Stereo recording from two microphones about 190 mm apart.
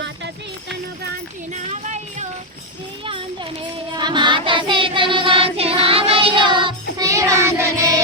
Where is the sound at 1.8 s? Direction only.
40° right (ahead or behind).